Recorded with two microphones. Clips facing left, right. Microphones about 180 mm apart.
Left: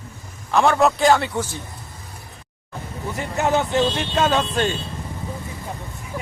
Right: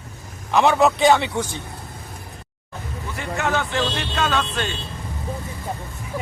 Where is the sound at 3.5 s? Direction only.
20° left (ahead or behind).